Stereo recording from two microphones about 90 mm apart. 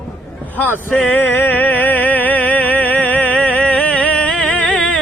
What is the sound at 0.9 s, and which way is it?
Music, 15° left (ahead or behind).